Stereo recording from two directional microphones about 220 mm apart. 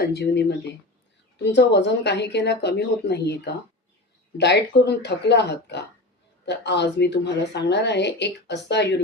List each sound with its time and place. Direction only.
0.1 s speech: 50° left (ahead or behind)
1.5 s speech: 50° left (ahead or behind)